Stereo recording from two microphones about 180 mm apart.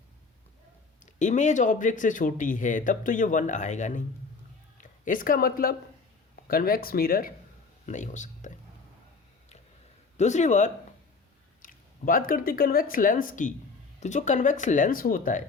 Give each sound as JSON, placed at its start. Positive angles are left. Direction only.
{"t": 1.0, "sound": "speech", "side_deg": 45}
{"t": 10.2, "sound": "speech", "side_deg": 40}